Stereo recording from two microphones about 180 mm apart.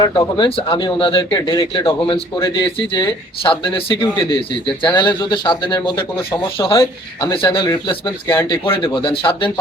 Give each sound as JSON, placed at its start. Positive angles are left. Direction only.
{"t": 0.0, "sound": "speech", "side_deg": 20}
{"t": 8.3, "sound": "speech", "side_deg": 15}
{"t": 8.8, "sound": "speech", "side_deg": 25}